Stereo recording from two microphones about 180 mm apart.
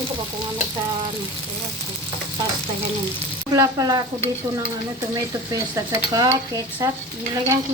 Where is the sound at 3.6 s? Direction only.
20° right (ahead or behind).